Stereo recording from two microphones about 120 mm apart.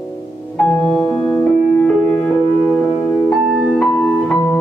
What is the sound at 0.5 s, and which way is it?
Music, 5° left (ahead or behind).